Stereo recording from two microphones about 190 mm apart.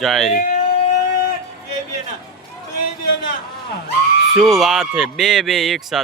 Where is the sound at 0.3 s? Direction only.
45° left (ahead or behind).